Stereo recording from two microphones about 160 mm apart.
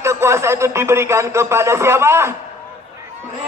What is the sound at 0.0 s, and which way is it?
Speech, 15° right (ahead or behind).